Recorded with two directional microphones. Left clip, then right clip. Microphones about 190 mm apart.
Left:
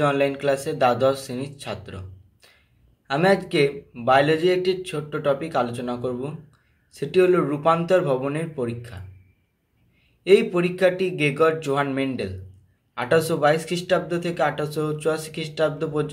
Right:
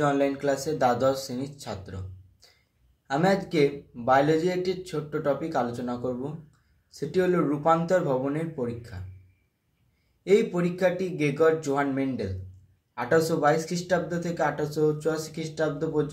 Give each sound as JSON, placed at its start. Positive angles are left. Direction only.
{"t": 0.0, "sound": "a man's voice", "side_deg": 20}
{"t": 10.2, "sound": "a man's voice", "side_deg": 20}